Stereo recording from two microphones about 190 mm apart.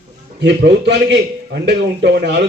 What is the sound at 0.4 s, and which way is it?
A man's voice, 65° right (ahead or behind).